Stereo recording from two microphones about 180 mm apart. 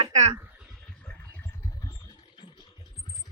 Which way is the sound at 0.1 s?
40° right (ahead or behind).